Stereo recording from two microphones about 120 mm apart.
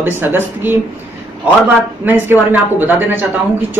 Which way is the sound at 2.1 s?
15° right (ahead or behind).